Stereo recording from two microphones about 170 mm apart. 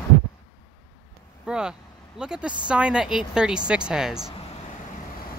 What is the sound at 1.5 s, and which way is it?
Speech, 5° right (ahead or behind).